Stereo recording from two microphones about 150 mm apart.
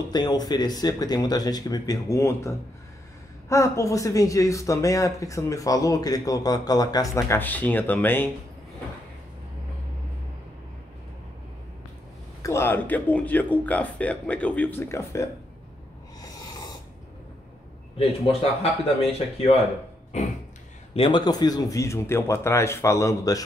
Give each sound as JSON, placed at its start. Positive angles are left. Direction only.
{"t": 0.1, "sound": "speech", "side_deg": 30}
{"t": 12.4, "sound": "speech", "side_deg": 20}
{"t": 16.2, "sound": "a sound", "side_deg": 25}
{"t": 17.9, "sound": "speech", "side_deg": 40}
{"t": 20.1, "sound": "a sound", "side_deg": 50}
{"t": 20.9, "sound": "speech", "side_deg": 35}